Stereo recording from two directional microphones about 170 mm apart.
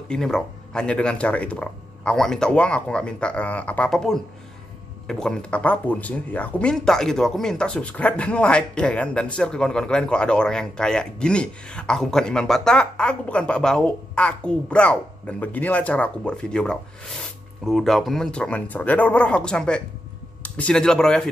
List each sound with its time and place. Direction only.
0.1 s speech: 5° left (ahead or behind)